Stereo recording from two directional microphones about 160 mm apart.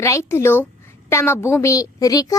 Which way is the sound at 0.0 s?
20° left (ahead or behind).